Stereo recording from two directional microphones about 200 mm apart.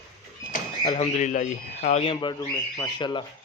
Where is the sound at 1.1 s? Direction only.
40° left (ahead or behind); by 3.2 s 20° left (ahead or behind).